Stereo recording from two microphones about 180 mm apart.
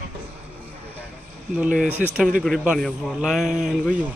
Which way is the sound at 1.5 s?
5° right (ahead or behind).